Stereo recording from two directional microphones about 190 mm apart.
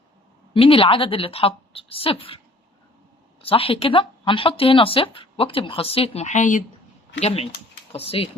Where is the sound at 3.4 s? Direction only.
30° left (ahead or behind).